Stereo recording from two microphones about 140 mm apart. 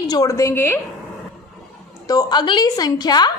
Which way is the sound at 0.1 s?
25° left (ahead or behind).